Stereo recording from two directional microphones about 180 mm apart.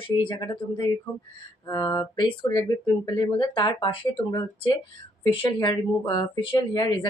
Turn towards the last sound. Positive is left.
turn(degrees=25)  # may be behind; listen again after turning